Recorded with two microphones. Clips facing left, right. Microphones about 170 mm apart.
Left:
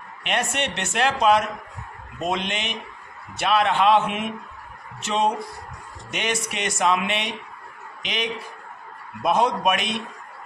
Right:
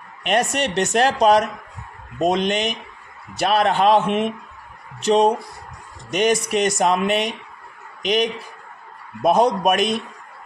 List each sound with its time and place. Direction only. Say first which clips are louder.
0.2 s speech: right 6 dB; 40° right (ahead or behind)